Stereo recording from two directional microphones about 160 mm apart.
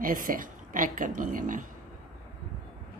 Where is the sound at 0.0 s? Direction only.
60° right (ahead or behind).